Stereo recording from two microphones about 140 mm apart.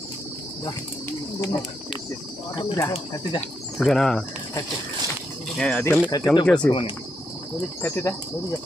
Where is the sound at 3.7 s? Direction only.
Centre (ahead or behind).